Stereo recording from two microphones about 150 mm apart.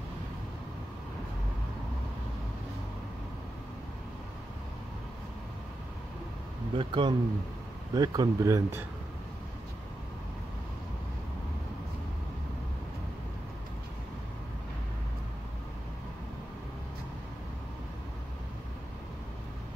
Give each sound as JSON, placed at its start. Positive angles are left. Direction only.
{"t": 6.7, "sound": "speech", "side_deg": -35}